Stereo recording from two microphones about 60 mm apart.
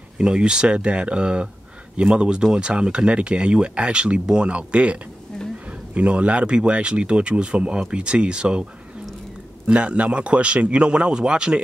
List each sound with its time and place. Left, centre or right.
0.2 s speech: centre
5.3 s a sound: centre
5.7 s speech: right
9.7 s speech: centre